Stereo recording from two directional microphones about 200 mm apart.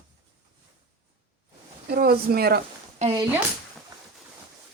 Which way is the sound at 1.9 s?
50° right (ahead or behind).